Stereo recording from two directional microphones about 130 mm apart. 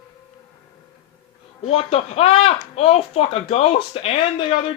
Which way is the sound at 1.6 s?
50° left (ahead or behind).